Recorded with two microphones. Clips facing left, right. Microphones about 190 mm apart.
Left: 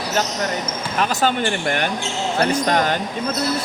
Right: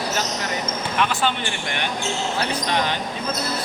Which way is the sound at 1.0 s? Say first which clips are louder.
Left 4 dB; 40° left (ahead or behind).